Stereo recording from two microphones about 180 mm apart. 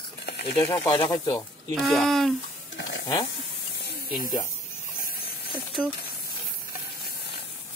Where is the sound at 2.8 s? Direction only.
80° left.